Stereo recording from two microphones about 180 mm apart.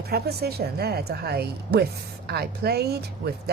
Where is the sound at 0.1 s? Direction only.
60° right (ahead or behind).